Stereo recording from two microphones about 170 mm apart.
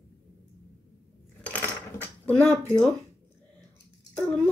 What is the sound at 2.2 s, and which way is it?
Speech, 5° left (ahead or behind).